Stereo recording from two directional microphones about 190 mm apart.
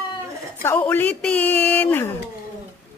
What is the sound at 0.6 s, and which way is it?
Speech, 10° left (ahead or behind).